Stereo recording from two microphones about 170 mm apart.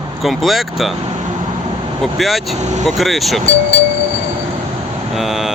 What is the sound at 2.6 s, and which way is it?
Speech, 40° right (ahead or behind).